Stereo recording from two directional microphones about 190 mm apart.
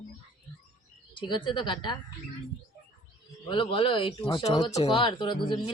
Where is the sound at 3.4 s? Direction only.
25° left (ahead or behind).